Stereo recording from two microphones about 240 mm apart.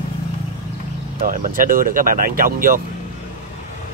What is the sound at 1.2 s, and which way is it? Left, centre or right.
Speech, right.